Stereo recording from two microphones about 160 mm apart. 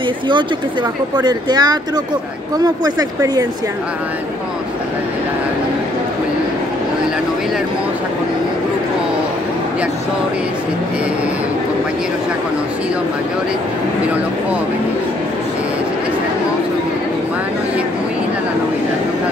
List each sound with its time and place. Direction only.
1.1 s speech: 25° right (ahead or behind)